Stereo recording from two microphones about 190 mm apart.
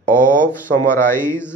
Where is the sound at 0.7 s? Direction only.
10° left (ahead or behind).